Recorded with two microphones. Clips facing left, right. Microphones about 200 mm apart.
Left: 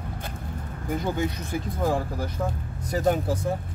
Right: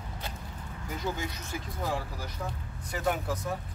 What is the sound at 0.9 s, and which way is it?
Speech, 55° left (ahead or behind).